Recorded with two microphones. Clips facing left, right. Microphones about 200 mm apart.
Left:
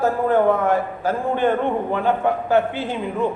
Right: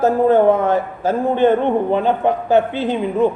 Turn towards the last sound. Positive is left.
turn(degrees=-20)  # may be behind; listen again after turning